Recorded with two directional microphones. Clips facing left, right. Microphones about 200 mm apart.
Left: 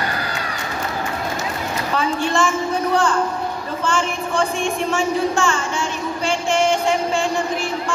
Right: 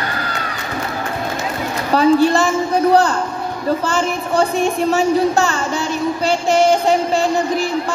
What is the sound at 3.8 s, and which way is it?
Speech, 40° right (ahead or behind).